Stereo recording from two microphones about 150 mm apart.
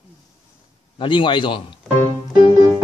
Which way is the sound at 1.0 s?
35° left (ahead or behind).